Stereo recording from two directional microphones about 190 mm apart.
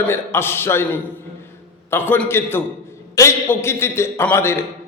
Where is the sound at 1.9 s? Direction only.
10° left (ahead or behind).